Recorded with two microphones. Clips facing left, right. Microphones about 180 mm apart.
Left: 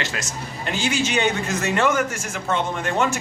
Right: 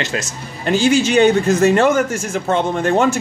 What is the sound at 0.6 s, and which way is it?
Speech, 35° right (ahead or behind).